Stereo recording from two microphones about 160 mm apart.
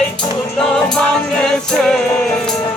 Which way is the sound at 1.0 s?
5° left (ahead or behind).